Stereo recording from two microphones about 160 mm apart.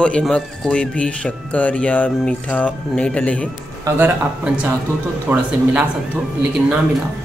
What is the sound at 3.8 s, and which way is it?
Music, 10° right (ahead or behind).